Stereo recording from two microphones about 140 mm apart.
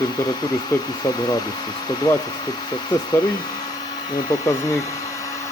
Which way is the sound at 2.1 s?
25° left (ahead or behind).